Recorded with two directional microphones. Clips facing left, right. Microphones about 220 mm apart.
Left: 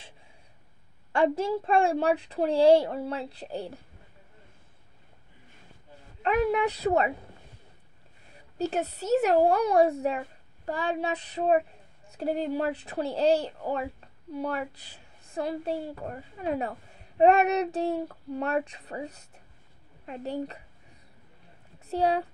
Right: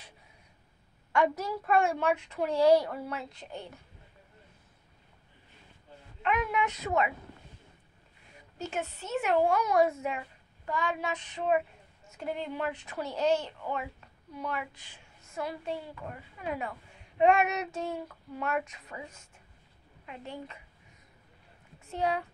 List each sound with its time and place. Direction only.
1.1 s a woman's voice: 30° left (ahead or behind)
6.2 s a woman's voice: 35° left (ahead or behind)
8.5 s a woman's voice: 35° left (ahead or behind)
21.8 s speech: 35° left (ahead or behind)